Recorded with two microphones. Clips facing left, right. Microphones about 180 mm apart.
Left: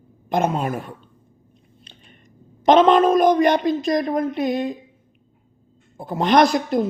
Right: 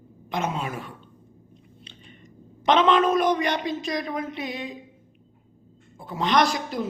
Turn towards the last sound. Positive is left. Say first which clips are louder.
# left 7 dB
turn(degrees=50)  # may be behind; listen again after turning